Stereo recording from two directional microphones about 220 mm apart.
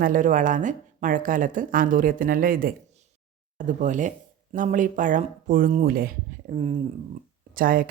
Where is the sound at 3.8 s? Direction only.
35° right (ahead or behind).